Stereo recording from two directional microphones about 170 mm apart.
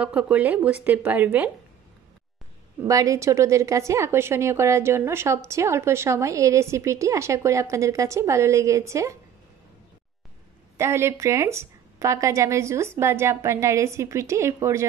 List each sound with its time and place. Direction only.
0.0 s a woman's voice: 5° right (ahead or behind)
2.9 s a woman's voice: 20° right (ahead or behind)
10.8 s a woman's voice: 15° right (ahead or behind)